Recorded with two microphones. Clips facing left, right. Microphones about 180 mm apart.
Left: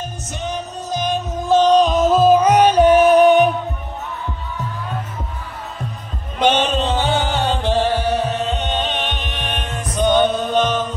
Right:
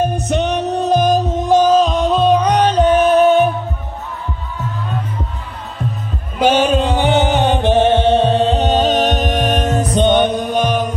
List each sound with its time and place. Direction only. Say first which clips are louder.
0.0 s music: right 11 dB; 60° right (ahead or behind)
1.1 s music: right 7 dB; 30° right (ahead or behind)
1.4 s music: even; 10° right (ahead or behind); by 3.5 s 15° left (ahead or behind)
6.4 s music: right 4 dB; 10° right (ahead or behind); by 9.8 s 40° right (ahead or behind)
9.9 s chant: right 1 dB; 20° right (ahead or behind)